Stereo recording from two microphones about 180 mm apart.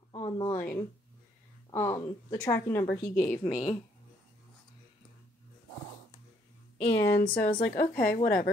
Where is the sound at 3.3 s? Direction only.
45° left (ahead or behind).